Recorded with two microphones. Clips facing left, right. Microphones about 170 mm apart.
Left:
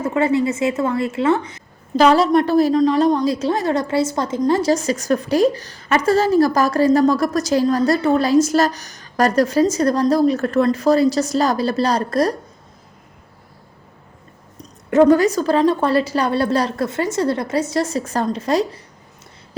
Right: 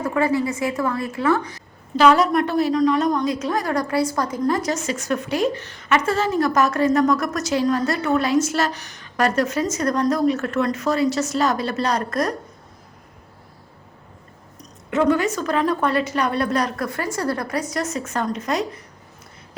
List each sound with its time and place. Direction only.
0.0 s a woman's voice: 25° left (ahead or behind)
14.6 s a woman's voice: 40° left (ahead or behind)